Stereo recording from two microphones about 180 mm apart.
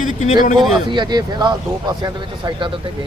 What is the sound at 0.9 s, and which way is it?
Speech, 25° right (ahead or behind).